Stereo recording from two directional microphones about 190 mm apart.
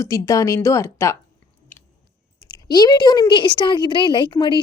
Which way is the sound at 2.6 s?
20° left (ahead or behind).